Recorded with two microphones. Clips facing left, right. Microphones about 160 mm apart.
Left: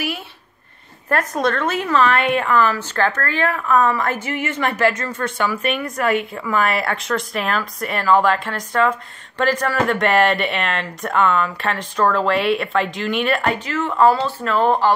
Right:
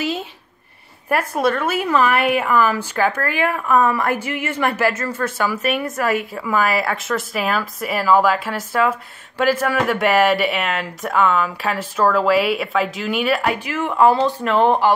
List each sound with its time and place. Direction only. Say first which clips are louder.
1.0 s a woman's voice: right 1 dB; 10° right (ahead or behind)